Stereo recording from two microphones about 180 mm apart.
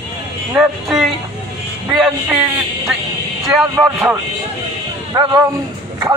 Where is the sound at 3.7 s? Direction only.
15° right (ahead or behind).